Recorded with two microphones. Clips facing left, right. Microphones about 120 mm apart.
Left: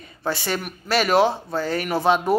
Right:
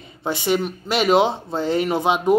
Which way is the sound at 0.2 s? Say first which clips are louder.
Right 5 dB; 20° right (ahead or behind).